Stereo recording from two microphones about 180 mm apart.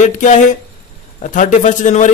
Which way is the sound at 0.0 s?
45° left (ahead or behind).